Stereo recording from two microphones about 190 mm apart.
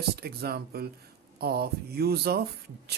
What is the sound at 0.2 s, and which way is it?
Speech, 55° right (ahead or behind).